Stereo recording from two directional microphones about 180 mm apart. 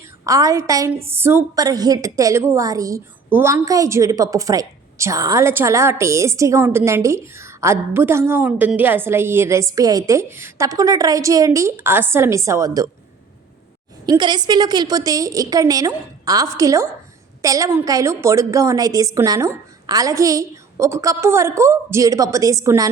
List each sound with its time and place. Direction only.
0.3 s a woman's voice: 20° right (ahead or behind)
14.1 s a woman's voice: 25° right (ahead or behind)